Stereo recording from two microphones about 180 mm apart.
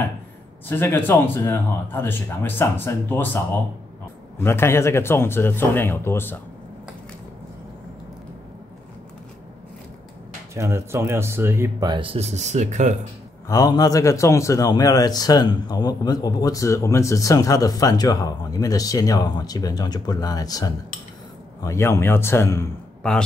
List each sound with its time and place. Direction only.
0.7 s speech: 10° left (ahead or behind)
10.5 s speech: 15° right (ahead or behind); by 12.9 s 40° right (ahead or behind)
13.5 s speech: 20° left (ahead or behind)